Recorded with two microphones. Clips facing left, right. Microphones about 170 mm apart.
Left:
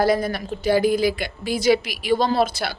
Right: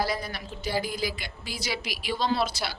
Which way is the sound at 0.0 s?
50° left (ahead or behind).